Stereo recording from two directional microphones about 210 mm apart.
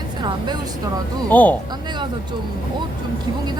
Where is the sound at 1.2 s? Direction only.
10° left (ahead or behind).